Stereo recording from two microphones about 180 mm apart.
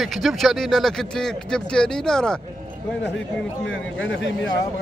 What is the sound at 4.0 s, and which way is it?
Speech, 90° left.